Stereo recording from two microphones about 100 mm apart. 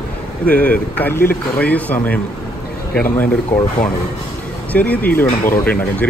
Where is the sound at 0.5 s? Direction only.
15° left (ahead or behind).